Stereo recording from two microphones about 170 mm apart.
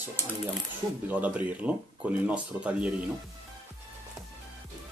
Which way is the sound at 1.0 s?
10° right (ahead or behind).